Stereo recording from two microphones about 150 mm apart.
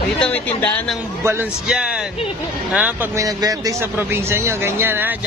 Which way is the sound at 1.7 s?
5° right (ahead or behind).